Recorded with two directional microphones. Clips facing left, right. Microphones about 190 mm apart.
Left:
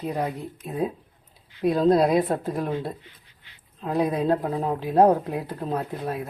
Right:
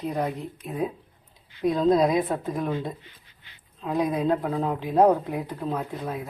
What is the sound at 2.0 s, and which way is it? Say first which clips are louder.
Speech: left 2 dB; 30° left (ahead or behind).